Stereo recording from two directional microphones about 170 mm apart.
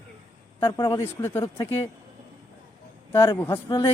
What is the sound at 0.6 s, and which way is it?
Speech, 20° left (ahead or behind).